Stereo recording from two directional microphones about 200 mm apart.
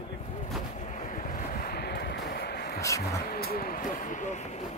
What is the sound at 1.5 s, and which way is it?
Vehicle, 50° left (ahead or behind).